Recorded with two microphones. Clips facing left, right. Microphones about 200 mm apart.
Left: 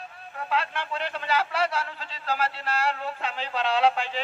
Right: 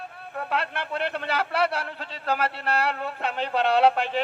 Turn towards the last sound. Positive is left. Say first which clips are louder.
# right 3 dB
turn(degrees=-60)  # may be behind; listen again after turning